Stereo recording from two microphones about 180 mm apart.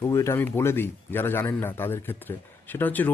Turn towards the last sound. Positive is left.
turn(degrees=10)  # may be behind; listen again after turning